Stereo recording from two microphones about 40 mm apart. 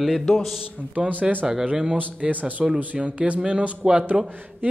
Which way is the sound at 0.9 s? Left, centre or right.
Right.